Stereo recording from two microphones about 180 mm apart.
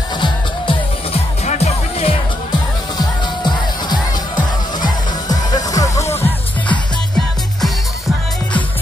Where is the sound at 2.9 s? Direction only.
25° left (ahead or behind).